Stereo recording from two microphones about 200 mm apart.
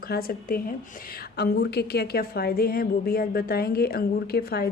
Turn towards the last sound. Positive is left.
turn(degrees=50)  # may be behind; listen again after turning